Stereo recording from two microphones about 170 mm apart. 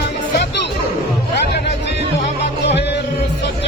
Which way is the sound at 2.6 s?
90° left.